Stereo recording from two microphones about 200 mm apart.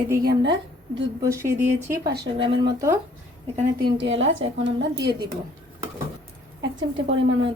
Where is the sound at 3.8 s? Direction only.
65° right (ahead or behind).